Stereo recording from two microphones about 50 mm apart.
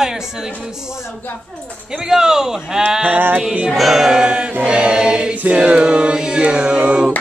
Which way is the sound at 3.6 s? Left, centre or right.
Centre.